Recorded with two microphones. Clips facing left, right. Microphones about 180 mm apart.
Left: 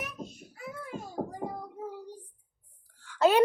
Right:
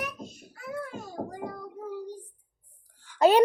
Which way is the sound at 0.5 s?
80° right.